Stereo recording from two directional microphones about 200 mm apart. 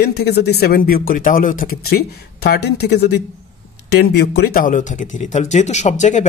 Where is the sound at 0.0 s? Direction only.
55° left (ahead or behind).